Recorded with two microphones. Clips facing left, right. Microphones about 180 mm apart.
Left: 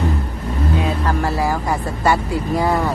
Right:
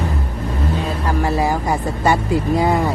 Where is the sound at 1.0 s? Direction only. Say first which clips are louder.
Right 1 dB; 20° right (ahead or behind).